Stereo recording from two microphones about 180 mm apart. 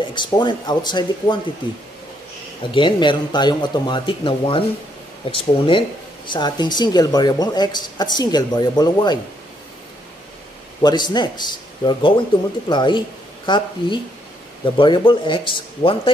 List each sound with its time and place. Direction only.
0.1 s speech: 25° left (ahead or behind)
2.7 s speech: 25° left (ahead or behind)
10.8 s speech: 25° left (ahead or behind)